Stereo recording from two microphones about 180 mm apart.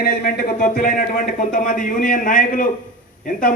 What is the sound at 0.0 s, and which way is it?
Speech, 55° left (ahead or behind).